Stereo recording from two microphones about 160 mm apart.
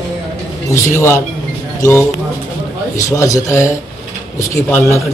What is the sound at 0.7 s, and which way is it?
Speech, 15° left (ahead or behind).